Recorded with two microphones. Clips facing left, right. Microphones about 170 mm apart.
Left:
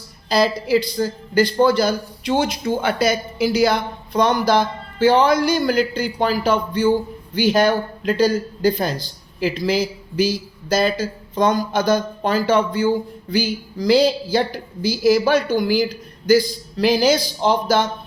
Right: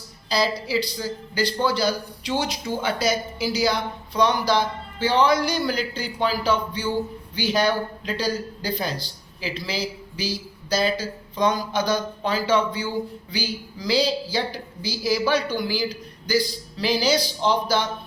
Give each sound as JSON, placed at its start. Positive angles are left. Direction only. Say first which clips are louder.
{"t": 0.3, "sound": "a man's voice", "louder": "left 6 dB", "side_deg": 50}